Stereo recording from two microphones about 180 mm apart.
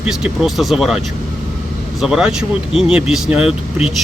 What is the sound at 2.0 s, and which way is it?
Speech, 5° right (ahead or behind).